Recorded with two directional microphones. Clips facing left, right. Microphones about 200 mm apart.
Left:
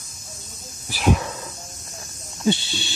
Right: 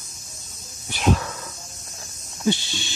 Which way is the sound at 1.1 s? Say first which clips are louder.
Left 1 dB; 20° left (ahead or behind).